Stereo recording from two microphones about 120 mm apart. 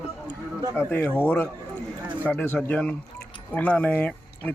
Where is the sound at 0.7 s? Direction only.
15° left (ahead or behind).